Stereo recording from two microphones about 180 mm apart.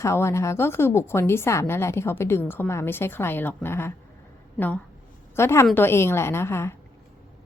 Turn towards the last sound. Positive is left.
turn(degrees=15)  # may be behind; listen again after turning